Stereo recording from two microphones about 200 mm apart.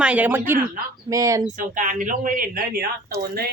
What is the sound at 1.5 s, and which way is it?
Speech, 40° right (ahead or behind).